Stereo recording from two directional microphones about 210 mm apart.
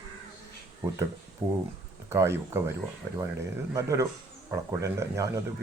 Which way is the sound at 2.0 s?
10° right (ahead or behind).